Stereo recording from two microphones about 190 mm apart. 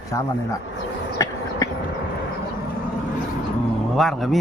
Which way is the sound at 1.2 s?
15° left (ahead or behind).